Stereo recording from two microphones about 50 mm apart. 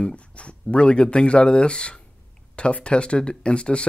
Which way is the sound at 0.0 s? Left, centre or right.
Left.